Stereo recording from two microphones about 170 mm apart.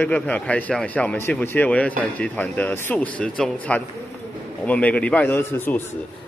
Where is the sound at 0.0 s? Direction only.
10° left (ahead or behind).